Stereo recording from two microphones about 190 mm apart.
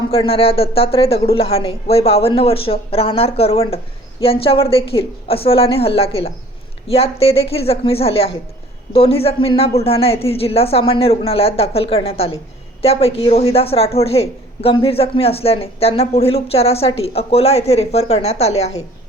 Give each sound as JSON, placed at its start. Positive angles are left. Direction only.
{"t": 0.1, "sound": "a woman's voice", "side_deg": 30}